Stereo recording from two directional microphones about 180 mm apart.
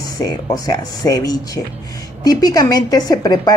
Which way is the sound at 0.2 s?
20° left (ahead or behind).